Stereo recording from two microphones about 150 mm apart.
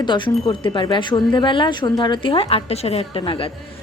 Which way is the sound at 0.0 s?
30° left (ahead or behind).